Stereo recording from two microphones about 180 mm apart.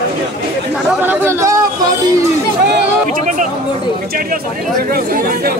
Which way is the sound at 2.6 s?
50° right (ahead or behind).